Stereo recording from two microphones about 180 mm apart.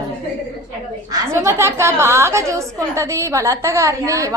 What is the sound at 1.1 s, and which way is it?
A woman's voice, 15° right (ahead or behind).